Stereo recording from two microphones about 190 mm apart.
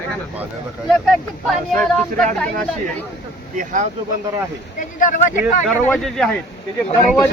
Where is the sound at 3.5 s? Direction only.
45° right (ahead or behind).